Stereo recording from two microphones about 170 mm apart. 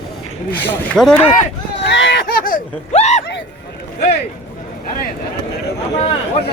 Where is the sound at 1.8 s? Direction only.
90° left.